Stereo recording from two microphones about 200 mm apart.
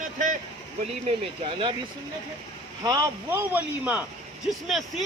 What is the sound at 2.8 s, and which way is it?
Speech, 15° right (ahead or behind).